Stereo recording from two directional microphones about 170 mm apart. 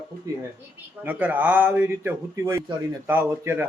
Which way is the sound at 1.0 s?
10° right (ahead or behind).